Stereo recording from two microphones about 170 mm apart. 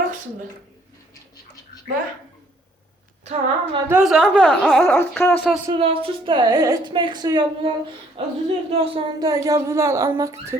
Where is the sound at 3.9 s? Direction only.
5° right (ahead or behind).